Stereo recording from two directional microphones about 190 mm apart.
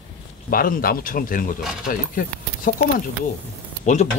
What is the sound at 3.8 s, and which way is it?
Speech, 40° left (ahead or behind).